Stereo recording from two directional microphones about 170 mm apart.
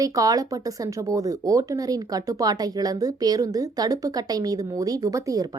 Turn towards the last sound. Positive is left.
turn(degrees=-20)  # may be behind; listen again after turning